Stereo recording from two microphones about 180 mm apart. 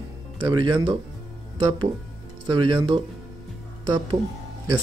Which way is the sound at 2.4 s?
25° right (ahead or behind).